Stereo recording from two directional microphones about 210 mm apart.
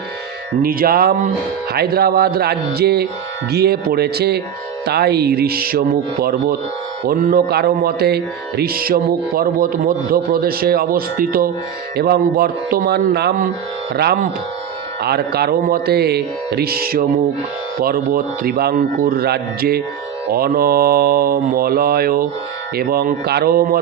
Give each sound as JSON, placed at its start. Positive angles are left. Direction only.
{"t": 0.6, "sound": "speech", "side_deg": -45}